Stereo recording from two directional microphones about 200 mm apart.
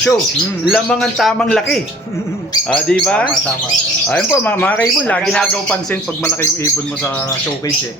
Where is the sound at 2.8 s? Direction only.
5° left (ahead or behind).